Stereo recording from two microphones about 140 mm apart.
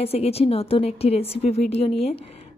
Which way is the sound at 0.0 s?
45° left (ahead or behind).